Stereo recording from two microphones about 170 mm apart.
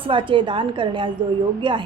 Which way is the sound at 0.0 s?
30° right (ahead or behind).